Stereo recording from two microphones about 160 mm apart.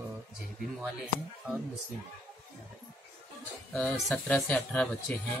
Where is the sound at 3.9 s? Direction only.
5° left (ahead or behind).